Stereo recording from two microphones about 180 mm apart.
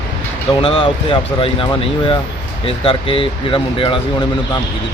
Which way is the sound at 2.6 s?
30° left (ahead or behind).